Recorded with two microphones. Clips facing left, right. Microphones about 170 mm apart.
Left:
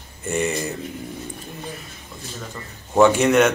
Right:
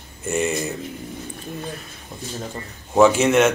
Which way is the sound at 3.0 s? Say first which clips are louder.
Even; centre (ahead or behind).